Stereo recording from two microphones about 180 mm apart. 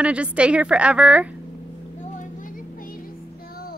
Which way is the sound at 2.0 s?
45° left (ahead or behind).